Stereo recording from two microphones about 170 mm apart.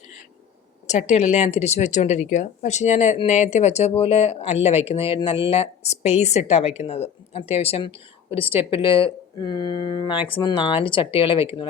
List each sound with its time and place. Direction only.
0.9 s a woman's voice: 45° left (ahead or behind)